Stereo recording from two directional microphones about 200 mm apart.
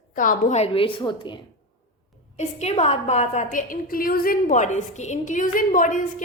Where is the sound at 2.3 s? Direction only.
35° left (ahead or behind).